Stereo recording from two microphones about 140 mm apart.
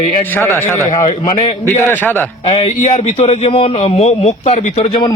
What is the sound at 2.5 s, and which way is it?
A man's voice, 55° left (ahead or behind).